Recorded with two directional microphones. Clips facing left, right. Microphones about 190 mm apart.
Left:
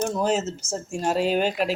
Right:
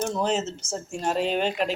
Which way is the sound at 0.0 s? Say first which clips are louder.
Left 2 dB; 5° left (ahead or behind).